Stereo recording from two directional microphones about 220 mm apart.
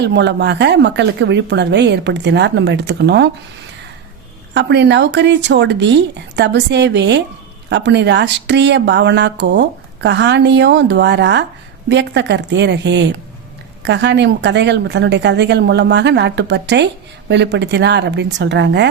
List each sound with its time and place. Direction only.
0.0 s speech: 50° right (ahead or behind)
4.5 s speech: 50° right (ahead or behind)